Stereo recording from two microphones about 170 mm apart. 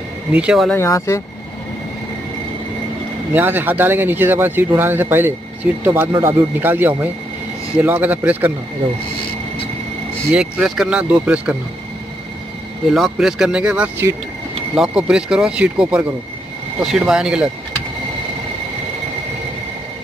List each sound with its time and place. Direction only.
0.3 s speech: 5° right (ahead or behind)
0.7 s speech: 15° left (ahead or behind)
3.3 s speech: 10° right (ahead or behind)
10.3 s speech: 5° right (ahead or behind)
12.9 s speech: centre (ahead or behind)